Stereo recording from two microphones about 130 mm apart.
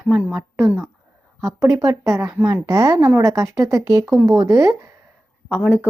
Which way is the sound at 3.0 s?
20° right (ahead or behind).